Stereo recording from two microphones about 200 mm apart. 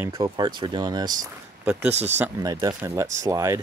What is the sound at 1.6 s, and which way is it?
Speech, 5° right (ahead or behind).